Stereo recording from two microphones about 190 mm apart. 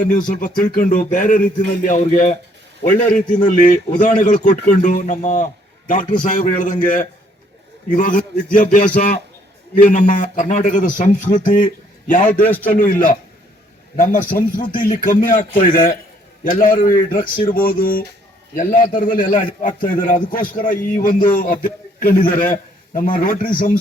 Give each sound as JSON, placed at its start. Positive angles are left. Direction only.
{"t": 0.1, "sound": "a man's voice", "side_deg": 45}
{"t": 12.5, "sound": "a man's voice", "side_deg": 10}
{"t": 12.7, "sound": "a man's voice", "side_deg": 45}